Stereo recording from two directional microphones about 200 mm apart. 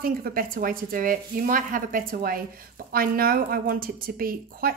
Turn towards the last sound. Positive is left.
turn(degrees=-45)  # may be behind; listen again after turning